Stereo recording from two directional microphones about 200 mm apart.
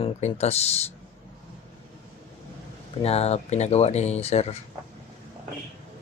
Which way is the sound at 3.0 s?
30° left (ahead or behind).